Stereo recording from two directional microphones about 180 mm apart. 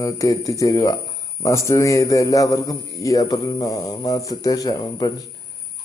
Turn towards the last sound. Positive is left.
turn(degrees=20)  # may be behind; listen again after turning